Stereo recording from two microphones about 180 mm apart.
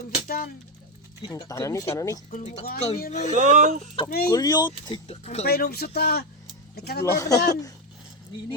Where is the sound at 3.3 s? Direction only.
40° right (ahead or behind).